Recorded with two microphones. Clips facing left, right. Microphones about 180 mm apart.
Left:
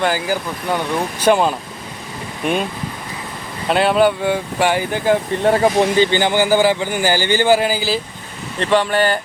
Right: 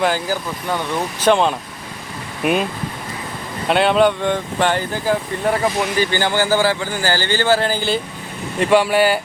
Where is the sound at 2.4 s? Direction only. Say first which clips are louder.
Right 2 dB; 5° right (ahead or behind).